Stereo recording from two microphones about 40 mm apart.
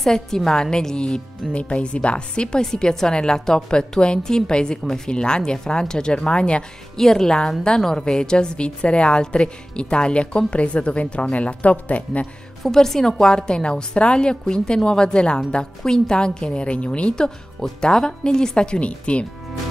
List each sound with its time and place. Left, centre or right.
0.0 s a woman's voice: centre; by 6.6 s left
7.0 s a woman's voice: centre; by 12.3 s left
12.6 s a woman's voice: centre; by 17.1 s left
17.1 s a woman's voice: centre